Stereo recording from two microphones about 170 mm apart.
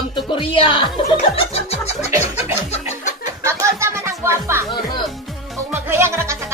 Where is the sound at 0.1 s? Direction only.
30° left (ahead or behind).